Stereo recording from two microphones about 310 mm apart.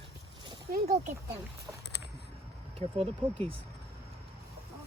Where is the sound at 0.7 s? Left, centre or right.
Right.